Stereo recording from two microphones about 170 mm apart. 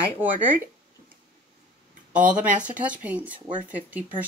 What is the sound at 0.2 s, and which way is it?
Speech, 10° right (ahead or behind).